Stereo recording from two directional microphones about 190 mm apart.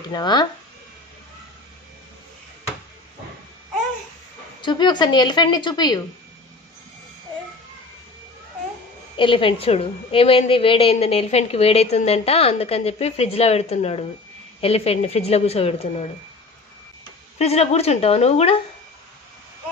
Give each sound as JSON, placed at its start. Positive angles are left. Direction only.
{"t": 0.1, "sound": "speech", "side_deg": 20}
{"t": 4.6, "sound": "speech", "side_deg": 25}
{"t": 9.1, "sound": "a woman's voice", "side_deg": 25}
{"t": 17.4, "sound": "a woman's voice", "side_deg": 35}